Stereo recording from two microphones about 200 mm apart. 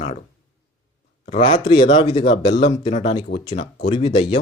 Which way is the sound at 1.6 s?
25° left (ahead or behind).